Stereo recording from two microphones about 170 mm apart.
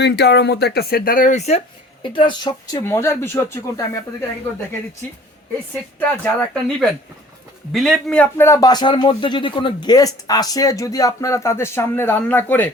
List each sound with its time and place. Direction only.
0.0 s speech: 80° left; by 1.6 s 40° left (ahead or behind)
2.0 s speech: 25° left (ahead or behind)
6.2 s a man's voice: 5° left (ahead or behind)